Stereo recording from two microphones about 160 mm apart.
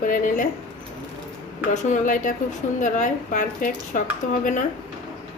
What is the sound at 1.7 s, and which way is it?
A woman's voice, 50° left (ahead or behind).